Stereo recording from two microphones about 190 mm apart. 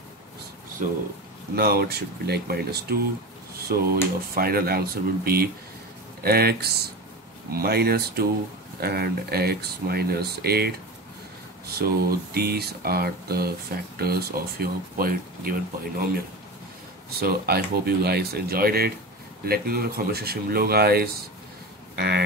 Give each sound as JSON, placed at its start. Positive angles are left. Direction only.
{"t": 0.8, "sound": "speech", "side_deg": -45}
{"t": 1.5, "sound": "speech", "side_deg": -55}
{"t": 11.8, "sound": "speech", "side_deg": -55}
{"t": 17.1, "sound": "speech", "side_deg": -55}